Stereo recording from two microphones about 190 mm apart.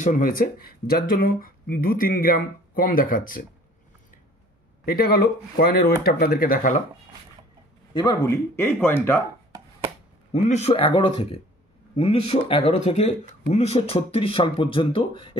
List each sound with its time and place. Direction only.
0.0 s speech: 45° left (ahead or behind)
4.8 s speech: 55° left (ahead or behind)
7.9 s speech: 20° left (ahead or behind)
10.3 s speech: 35° left (ahead or behind)